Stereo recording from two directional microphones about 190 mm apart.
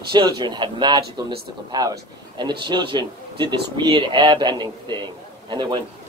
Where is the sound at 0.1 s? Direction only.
25° right (ahead or behind).